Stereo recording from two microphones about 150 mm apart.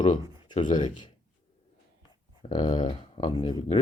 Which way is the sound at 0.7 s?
30° left (ahead or behind).